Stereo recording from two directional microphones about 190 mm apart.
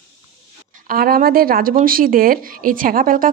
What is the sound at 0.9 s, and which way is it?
Speech, 50° right (ahead or behind).